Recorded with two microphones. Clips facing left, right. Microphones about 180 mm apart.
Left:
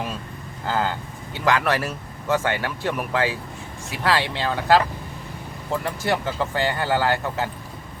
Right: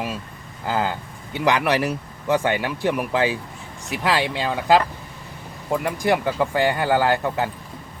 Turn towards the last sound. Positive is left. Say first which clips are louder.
# right 3 dB
turn(degrees=-15)  # may be behind; listen again after turning